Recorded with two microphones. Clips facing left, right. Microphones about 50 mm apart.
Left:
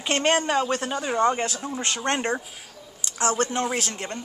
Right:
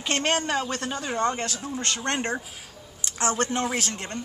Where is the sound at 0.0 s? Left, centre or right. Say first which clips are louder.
Left 3 dB; centre.